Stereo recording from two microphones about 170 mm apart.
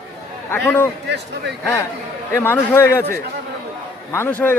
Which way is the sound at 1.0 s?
85° right.